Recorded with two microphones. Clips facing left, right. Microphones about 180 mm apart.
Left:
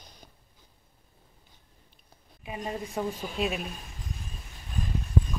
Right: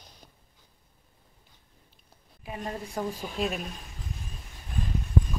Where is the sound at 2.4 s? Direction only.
10° left (ahead or behind).